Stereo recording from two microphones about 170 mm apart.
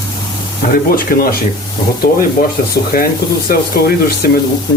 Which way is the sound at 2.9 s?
60° left (ahead or behind).